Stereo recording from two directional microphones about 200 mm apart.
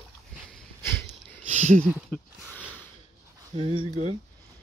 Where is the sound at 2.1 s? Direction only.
5° left (ahead or behind).